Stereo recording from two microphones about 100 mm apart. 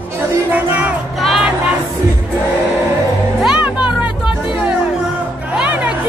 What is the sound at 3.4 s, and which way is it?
Music, 10° right (ahead or behind).